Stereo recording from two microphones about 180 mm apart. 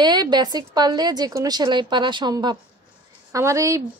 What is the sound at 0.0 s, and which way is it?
A woman's voice, 25° right (ahead or behind).